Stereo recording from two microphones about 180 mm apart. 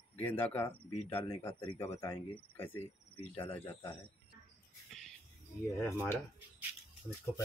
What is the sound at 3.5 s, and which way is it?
Speech, 10° left (ahead or behind).